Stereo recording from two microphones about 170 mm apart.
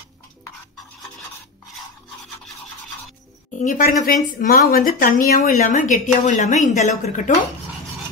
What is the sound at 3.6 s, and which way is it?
A woman's voice, 55° left (ahead or behind).